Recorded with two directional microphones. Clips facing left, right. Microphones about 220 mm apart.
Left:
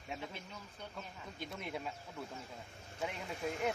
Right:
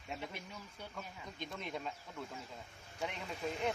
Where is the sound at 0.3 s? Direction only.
10° right (ahead or behind).